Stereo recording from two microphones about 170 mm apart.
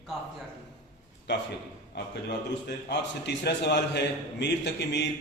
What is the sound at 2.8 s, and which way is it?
A man's voice, 80° left.